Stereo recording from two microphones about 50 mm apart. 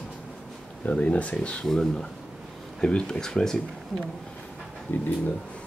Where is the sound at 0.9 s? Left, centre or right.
Left.